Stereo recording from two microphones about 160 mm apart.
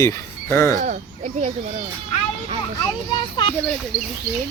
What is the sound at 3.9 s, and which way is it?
Speech, 65° left (ahead or behind).